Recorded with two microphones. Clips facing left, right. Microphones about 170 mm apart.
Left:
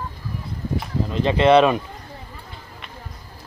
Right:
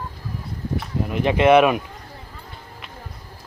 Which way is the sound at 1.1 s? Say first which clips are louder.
Even; 15° right (ahead or behind).